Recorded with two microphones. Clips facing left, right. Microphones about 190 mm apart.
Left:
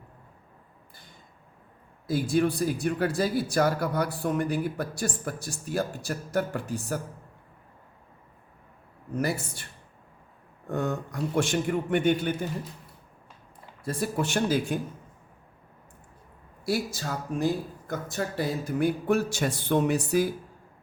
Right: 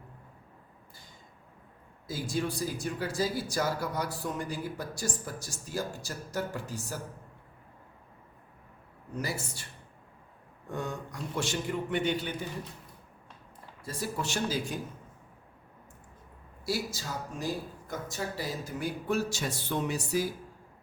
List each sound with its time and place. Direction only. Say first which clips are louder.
2.0 s speech: left 8 dB; 60° left (ahead or behind)
9.1 s speech: left 7 dB; 60° left (ahead or behind)
10.7 s speech: left 7 dB; 55° left (ahead or behind)
13.8 s speech: left 6 dB; 60° left (ahead or behind)
16.6 s speech: left 5 dB; 55° left (ahead or behind)